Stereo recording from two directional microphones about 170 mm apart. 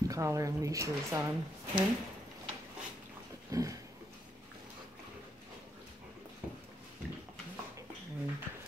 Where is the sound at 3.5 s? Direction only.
20° right (ahead or behind).